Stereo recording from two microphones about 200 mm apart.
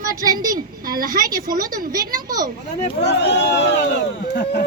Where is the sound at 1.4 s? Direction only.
20° right (ahead or behind).